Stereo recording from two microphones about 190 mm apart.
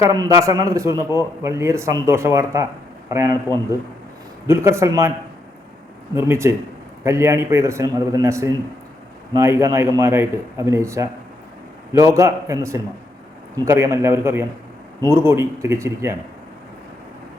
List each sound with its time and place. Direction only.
0.0 s a man's voice: 20° right (ahead or behind)
6.1 s a man's voice: 15° right (ahead or behind)